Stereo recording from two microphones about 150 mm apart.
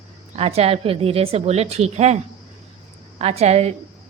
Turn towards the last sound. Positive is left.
turn(degrees=-45)  # may be behind; listen again after turning